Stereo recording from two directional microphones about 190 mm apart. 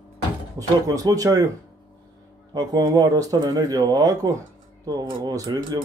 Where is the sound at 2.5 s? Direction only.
20° right (ahead or behind).